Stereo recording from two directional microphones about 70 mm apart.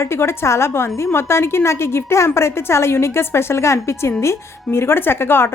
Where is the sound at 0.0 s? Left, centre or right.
Left.